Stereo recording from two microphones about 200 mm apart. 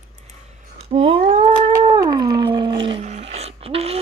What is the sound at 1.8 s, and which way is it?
Howl, 20° right (ahead or behind).